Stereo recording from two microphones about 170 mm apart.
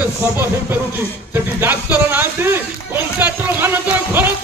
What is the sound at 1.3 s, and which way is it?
Speech, 15° right (ahead or behind).